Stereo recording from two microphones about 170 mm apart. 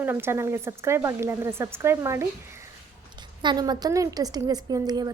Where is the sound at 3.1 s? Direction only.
25° right (ahead or behind).